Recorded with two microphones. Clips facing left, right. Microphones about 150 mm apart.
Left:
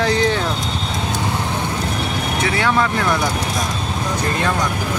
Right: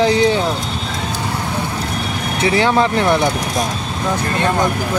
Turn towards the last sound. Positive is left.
turn(degrees=-25)  # may be behind; listen again after turning